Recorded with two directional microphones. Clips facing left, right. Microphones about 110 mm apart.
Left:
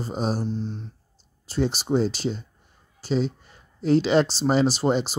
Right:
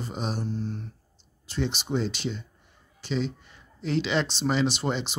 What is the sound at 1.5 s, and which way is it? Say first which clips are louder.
Speech: left 5 dB; 40° left (ahead or behind).